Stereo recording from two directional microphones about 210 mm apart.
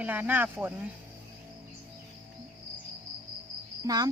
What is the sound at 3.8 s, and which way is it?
Speech, 15° right (ahead or behind).